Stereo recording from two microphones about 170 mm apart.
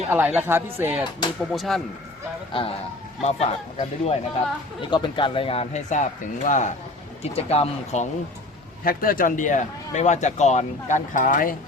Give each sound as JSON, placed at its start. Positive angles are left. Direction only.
{"t": 0.1, "sound": "speech", "side_deg": -10}
{"t": 1.5, "sound": "speech", "side_deg": 0}
{"t": 2.5, "sound": "speech", "side_deg": 30}
{"t": 7.2, "sound": "speech", "side_deg": 35}
{"t": 8.8, "sound": "a man's voice", "side_deg": 55}